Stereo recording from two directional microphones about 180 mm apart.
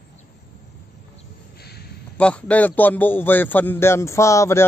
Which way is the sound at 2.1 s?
5° left (ahead or behind).